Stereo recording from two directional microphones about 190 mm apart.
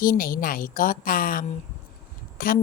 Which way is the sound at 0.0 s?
45° left (ahead or behind).